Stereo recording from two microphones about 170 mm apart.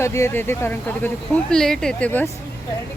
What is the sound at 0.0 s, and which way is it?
Speech, 15° left (ahead or behind).